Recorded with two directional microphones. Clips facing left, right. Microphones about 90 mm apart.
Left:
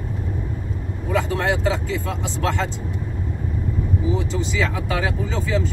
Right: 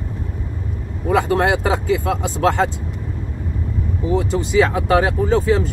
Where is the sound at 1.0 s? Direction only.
50° right (ahead or behind).